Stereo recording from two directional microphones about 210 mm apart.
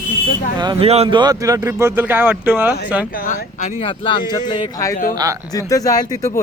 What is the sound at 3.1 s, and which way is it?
Speech, 40° left (ahead or behind).